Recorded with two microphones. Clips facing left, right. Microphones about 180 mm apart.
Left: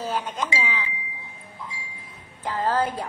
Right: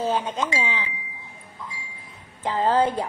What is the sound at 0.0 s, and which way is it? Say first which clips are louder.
Speech: right 4 dB; 25° right (ahead or behind).